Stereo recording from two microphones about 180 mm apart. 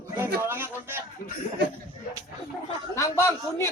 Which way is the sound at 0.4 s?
10° right (ahead or behind).